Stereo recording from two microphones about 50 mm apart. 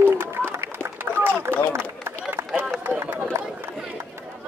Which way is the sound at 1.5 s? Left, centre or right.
Right.